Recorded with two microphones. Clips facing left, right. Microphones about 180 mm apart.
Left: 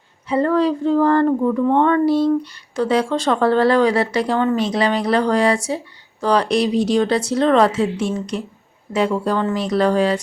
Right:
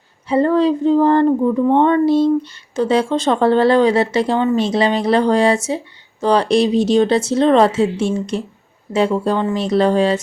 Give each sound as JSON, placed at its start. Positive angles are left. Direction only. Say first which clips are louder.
{"t": 0.3, "sound": "speech", "louder": "right 3 dB", "side_deg": -30}